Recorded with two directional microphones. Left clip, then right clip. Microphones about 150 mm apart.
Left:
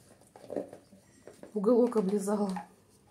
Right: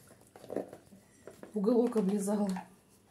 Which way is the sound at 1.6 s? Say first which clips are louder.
Left 4 dB; 15° left (ahead or behind).